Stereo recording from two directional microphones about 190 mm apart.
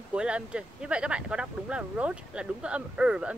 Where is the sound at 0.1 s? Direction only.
5° right (ahead or behind).